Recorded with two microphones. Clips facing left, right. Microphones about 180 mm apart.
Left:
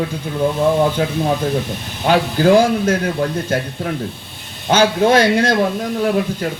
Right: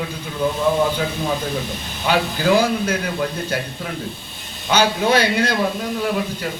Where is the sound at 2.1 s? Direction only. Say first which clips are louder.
Left 5 dB; 45° left (ahead or behind).